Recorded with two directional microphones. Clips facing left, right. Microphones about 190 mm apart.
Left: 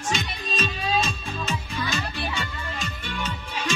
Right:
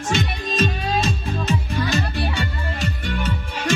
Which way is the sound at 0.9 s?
50° right (ahead or behind).